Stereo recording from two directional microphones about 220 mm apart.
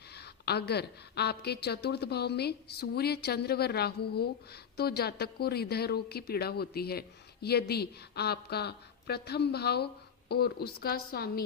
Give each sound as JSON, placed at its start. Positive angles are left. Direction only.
{"t": 0.1, "sound": "a woman's voice", "side_deg": 45}